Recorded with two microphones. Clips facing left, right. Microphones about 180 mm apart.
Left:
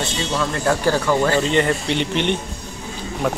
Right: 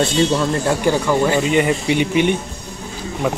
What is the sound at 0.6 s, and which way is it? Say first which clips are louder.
Speech: left 1 dB; 15° right (ahead or behind).